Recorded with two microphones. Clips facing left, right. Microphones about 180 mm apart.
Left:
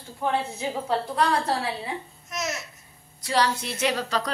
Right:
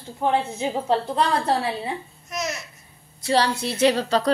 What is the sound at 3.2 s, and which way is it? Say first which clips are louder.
A woman's voice: right 3 dB; 30° right (ahead or behind).